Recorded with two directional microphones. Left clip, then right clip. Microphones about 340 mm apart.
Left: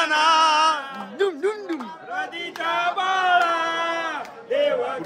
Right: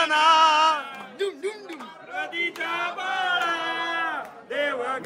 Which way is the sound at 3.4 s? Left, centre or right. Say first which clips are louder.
Left 4 dB; centre.